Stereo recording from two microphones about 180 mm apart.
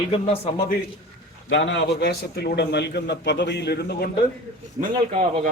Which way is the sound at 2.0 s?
60° left (ahead or behind).